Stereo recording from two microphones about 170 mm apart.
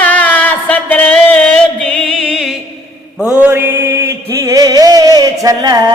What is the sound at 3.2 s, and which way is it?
Chant, 10° right (ahead or behind).